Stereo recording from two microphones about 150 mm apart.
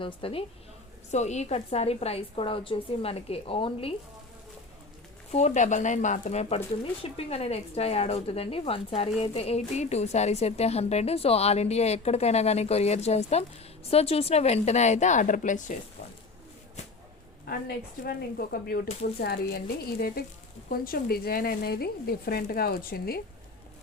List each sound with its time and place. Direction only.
0.0 s a woman's voice: 35° left (ahead or behind)
1.1 s a woman's voice: 50° left (ahead or behind)
5.3 s speech: 45° left (ahead or behind)
18.0 s a woman's voice: 80° left